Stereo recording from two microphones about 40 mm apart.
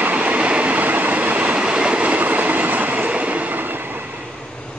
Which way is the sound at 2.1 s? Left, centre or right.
Right.